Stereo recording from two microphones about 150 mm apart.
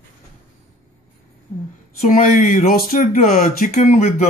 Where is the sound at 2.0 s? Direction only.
65° left (ahead or behind).